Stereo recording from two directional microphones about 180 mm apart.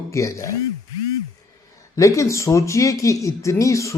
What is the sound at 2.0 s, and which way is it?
Speech, 15° left (ahead or behind).